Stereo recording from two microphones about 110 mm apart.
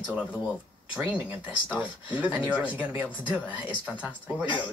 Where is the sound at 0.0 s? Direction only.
10° right (ahead or behind).